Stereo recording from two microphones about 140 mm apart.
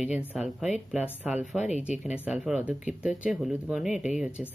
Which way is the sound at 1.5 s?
55° left (ahead or behind).